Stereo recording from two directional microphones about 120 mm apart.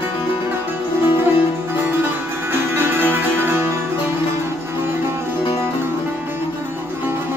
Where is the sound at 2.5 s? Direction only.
20° right (ahead or behind).